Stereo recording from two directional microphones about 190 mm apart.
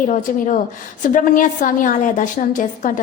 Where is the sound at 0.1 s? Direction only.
40° left (ahead or behind).